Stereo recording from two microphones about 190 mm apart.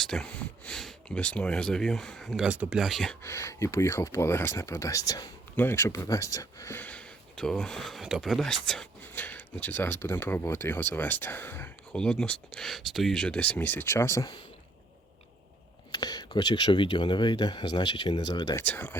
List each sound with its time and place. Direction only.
0.0 s speech: 5° left (ahead or behind)
3.2 s speech: 15° left (ahead or behind)
15.9 s speech: 20° left (ahead or behind)
18.6 s speech: 10° left (ahead or behind)